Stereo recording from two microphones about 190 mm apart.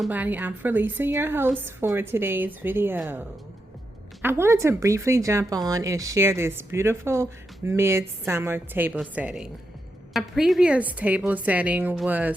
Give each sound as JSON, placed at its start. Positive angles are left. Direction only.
{"t": 0.0, "sound": "speech", "side_deg": -10}
{"t": 4.2, "sound": "speech", "side_deg": -15}